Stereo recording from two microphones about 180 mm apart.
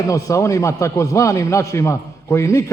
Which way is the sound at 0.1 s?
15° left (ahead or behind).